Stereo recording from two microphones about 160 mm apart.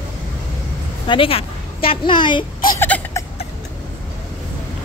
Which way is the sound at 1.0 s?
35° left (ahead or behind).